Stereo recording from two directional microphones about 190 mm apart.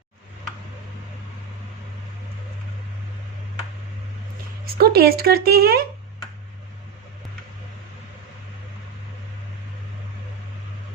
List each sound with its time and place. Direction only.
4.6 s speech: 55° right (ahead or behind)